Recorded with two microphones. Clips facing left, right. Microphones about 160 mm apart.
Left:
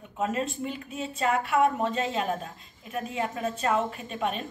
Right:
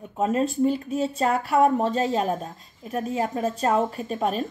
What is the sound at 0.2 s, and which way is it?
A woman's voice, 40° right (ahead or behind).